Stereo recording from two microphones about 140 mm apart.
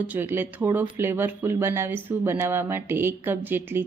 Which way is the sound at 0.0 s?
15° right (ahead or behind).